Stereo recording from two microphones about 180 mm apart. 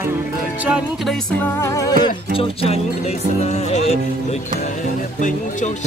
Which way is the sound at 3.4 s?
40° left (ahead or behind).